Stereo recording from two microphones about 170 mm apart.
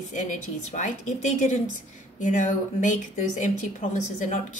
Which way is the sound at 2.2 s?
45° left (ahead or behind).